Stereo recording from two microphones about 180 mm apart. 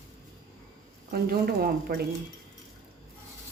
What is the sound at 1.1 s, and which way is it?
Speech, 55° right (ahead or behind).